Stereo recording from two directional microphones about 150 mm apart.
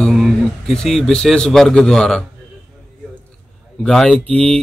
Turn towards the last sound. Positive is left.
turn(degrees=10)  # may be behind; listen again after turning